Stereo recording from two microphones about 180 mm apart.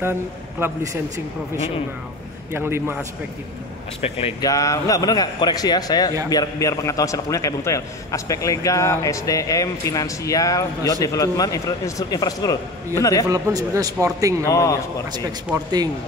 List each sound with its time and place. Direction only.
2.5 s a man's voice: 15° right (ahead or behind)
4.4 s a man's voice: 20° left (ahead or behind)
13.3 s speech: 20° right (ahead or behind)
14.5 s speech: 15° left (ahead or behind)
15.5 s speech: 20° right (ahead or behind)